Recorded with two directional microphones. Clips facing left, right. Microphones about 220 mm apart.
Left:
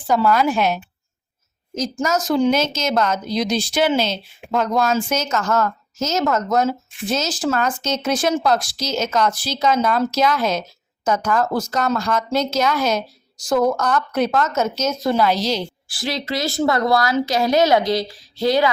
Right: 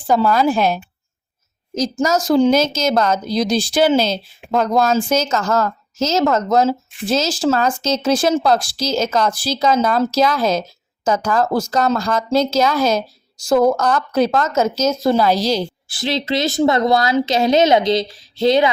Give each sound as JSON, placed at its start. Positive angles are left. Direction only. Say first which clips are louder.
{"t": 0.1, "sound": "a woman's voice", "louder": "right 2 dB", "side_deg": -30}
{"t": 14.5, "sound": "a woman's voice", "louder": "right 4 dB", "side_deg": -90}
{"t": 14.8, "sound": "a woman's voice", "louder": "right 3 dB", "side_deg": -35}
{"t": 15.9, "sound": "a woman's voice", "louder": "right 4 dB", "side_deg": -25}